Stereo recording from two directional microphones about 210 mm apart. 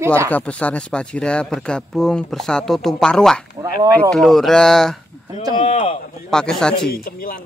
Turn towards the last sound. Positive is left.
turn(degrees=45)  # may be behind; listen again after turning